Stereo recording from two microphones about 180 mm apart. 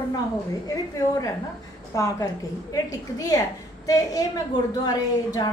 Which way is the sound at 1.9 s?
20° left (ahead or behind).